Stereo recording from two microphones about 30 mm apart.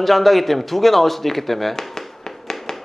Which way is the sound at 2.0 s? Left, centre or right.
Centre.